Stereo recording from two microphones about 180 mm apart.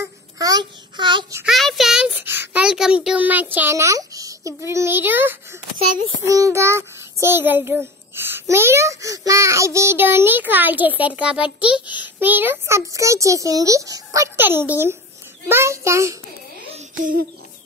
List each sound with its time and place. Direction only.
0.0 s a child's voice: 20° right (ahead or behind)
1.3 s a child's voice: 5° right (ahead or behind)
3.5 s child singing: 15° right (ahead or behind)